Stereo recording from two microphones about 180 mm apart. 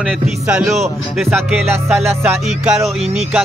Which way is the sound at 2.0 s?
10° right (ahead or behind).